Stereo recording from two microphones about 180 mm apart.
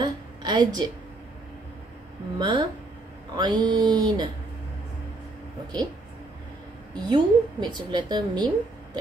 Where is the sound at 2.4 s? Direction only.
25° right (ahead or behind).